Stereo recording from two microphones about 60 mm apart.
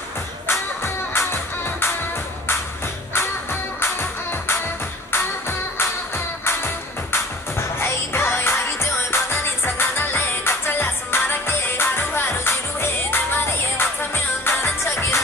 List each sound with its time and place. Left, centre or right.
0.5 s music: left
3.8 s music: left